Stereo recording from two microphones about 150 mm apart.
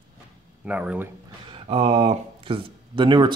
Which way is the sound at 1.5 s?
40° right (ahead or behind).